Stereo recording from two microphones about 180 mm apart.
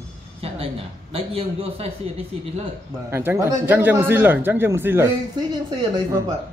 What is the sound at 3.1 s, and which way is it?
Speech, 15° right (ahead or behind).